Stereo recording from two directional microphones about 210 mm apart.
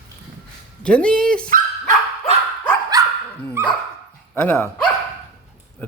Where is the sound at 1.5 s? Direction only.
40° right (ahead or behind).